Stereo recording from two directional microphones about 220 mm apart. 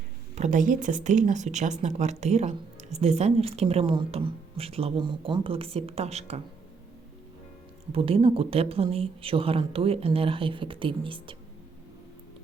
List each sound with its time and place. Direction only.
0.3 s speech: 35° right (ahead or behind)
7.9 s speech: 25° right (ahead or behind)